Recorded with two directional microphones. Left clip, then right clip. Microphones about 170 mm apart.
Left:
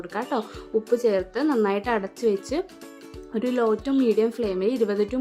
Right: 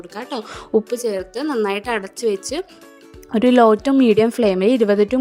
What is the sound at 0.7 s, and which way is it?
Speech, 50° right (ahead or behind).